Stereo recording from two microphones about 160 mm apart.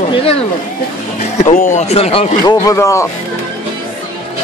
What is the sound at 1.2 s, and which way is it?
Speech, 45° left (ahead or behind).